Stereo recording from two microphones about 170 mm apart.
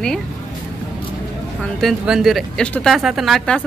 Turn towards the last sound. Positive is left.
turn(degrees=5)  # may be behind; listen again after turning